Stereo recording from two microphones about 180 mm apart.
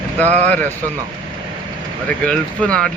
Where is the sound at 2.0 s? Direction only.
5° left (ahead or behind).